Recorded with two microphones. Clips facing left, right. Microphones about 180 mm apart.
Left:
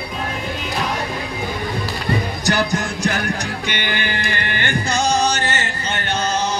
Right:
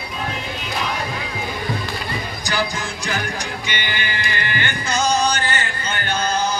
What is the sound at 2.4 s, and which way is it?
Music, 65° left (ahead or behind).